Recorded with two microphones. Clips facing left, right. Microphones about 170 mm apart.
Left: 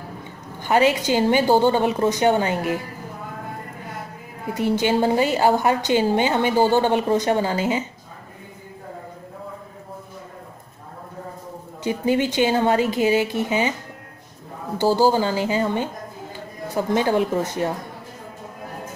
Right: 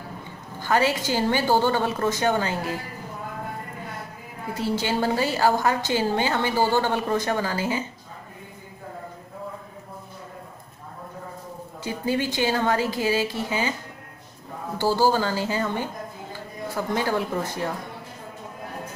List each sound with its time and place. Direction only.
0.6 s a woman's voice: 20° left (ahead or behind)
4.6 s a woman's voice: 20° left (ahead or behind)
11.8 s a woman's voice: 20° left (ahead or behind)
15.0 s a woman's voice: 15° left (ahead or behind)